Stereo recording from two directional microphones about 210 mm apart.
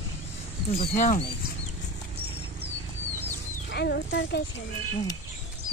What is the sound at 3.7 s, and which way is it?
Speech, 55° left (ahead or behind).